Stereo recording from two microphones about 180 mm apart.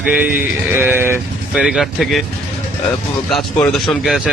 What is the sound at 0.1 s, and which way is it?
Speech, 10° right (ahead or behind).